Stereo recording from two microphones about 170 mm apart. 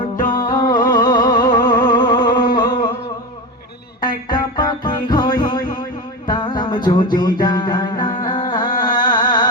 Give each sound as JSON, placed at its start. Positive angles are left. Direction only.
{"t": 0.3, "sound": "music", "side_deg": 20}
{"t": 4.0, "sound": "music", "side_deg": 25}
{"t": 7.4, "sound": "mantra", "side_deg": 25}
{"t": 9.0, "sound": "music", "side_deg": 25}